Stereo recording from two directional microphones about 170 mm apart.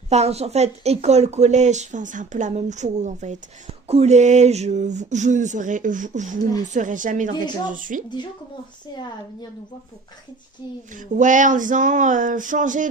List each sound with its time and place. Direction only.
0.1 s speech: 40° right (ahead or behind)
11.1 s speech: 50° right (ahead or behind)